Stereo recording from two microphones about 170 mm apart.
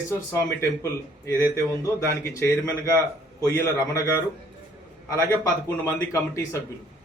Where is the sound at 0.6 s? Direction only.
15° left (ahead or behind).